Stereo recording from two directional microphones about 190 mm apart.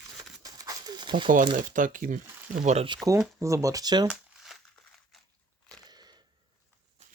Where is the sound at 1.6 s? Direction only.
45° right (ahead or behind).